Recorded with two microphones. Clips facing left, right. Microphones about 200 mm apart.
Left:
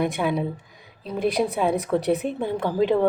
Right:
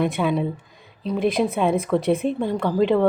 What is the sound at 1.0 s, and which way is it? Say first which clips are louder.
A woman's voice: right 2 dB; centre (ahead or behind).